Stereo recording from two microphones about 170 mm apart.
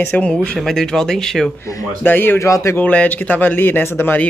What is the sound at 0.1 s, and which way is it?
Speech, 5° left (ahead or behind).